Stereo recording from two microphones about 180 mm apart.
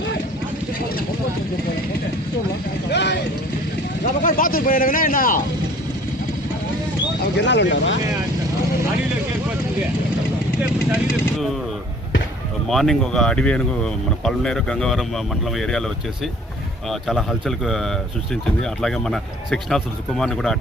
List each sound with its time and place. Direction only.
2.9 s speech: 70° left (ahead or behind)
4.0 s speech: 50° left (ahead or behind)
7.3 s speech: 75° left (ahead or behind)
12.6 s speech: centre (ahead or behind)
16.9 s speech: centre (ahead or behind)